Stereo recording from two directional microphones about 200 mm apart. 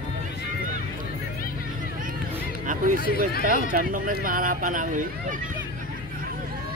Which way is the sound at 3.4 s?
45° right (ahead or behind).